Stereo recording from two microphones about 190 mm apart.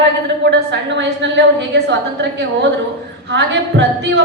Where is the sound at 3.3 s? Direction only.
65° right (ahead or behind).